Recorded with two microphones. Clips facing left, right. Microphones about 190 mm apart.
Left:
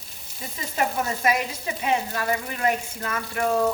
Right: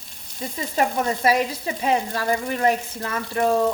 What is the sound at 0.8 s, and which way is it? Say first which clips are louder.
Frying: right 3 dB; 30° right (ahead or behind).